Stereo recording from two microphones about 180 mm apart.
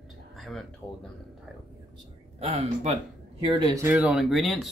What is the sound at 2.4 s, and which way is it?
Speech, 35° right (ahead or behind).